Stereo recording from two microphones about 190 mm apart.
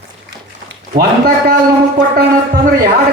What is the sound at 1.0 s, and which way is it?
Speech, 55° right (ahead or behind).